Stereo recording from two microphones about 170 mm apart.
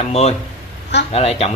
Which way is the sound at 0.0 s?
40° left (ahead or behind).